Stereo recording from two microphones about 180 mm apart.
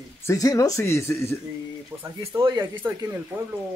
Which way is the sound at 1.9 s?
10° right (ahead or behind).